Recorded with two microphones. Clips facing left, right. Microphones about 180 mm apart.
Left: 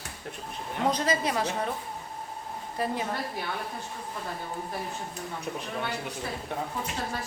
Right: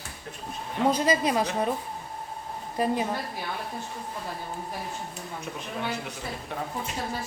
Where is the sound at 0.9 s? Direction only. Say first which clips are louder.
Right 3 dB; 10° right (ahead or behind).